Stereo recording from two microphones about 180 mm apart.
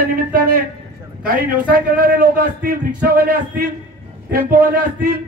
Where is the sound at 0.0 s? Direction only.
55° right (ahead or behind).